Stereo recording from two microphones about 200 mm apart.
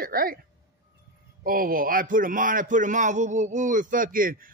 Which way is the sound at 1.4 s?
45° right (ahead or behind).